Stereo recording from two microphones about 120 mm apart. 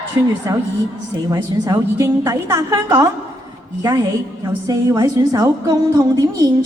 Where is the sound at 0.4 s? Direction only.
30° right (ahead or behind).